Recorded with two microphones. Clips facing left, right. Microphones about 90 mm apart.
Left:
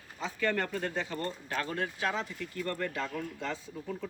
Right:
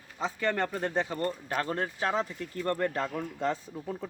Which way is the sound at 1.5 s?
40° right (ahead or behind).